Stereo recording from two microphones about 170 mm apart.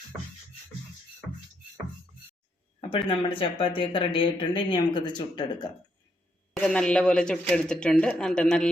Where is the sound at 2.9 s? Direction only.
30° left (ahead or behind).